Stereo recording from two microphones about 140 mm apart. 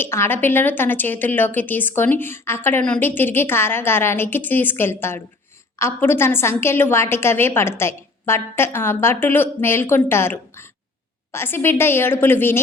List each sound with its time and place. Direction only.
0.0 s a woman's voice: 15° left (ahead or behind)